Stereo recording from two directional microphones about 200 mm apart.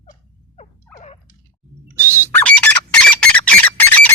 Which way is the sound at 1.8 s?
10° right (ahead or behind).